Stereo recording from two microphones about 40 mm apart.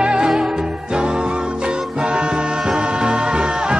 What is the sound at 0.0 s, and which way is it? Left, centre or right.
Music, right.